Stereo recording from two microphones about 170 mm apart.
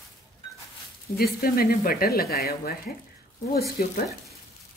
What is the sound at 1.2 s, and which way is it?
Speech, 60° left (ahead or behind).